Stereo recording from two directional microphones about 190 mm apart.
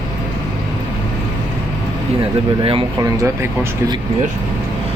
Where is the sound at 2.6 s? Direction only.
30° right (ahead or behind).